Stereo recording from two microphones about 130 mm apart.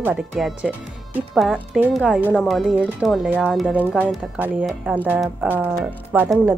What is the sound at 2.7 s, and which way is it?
Speech, 10° right (ahead or behind).